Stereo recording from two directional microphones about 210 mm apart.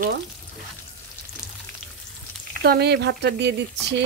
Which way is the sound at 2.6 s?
50° right (ahead or behind).